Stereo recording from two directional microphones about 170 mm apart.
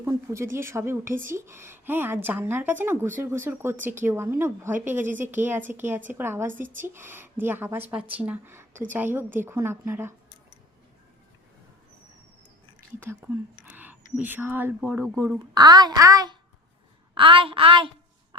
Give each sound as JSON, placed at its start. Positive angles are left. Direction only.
{"t": 0.0, "sound": "speech", "side_deg": -15}
{"t": 13.7, "sound": "speech", "side_deg": -10}
{"t": 15.4, "sound": "a child's voice", "side_deg": -20}